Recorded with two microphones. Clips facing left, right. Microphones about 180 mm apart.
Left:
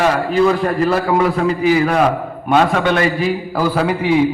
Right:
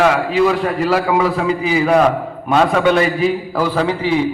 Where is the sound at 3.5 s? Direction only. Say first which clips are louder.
Even; 10° left (ahead or behind).